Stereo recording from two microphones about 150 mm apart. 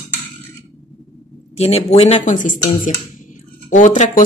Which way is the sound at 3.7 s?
55° left (ahead or behind).